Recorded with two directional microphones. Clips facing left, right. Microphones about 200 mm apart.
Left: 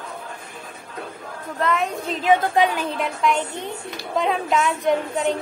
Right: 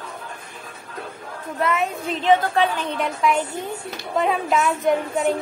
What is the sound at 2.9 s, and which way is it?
A woman's voice, centre (ahead or behind).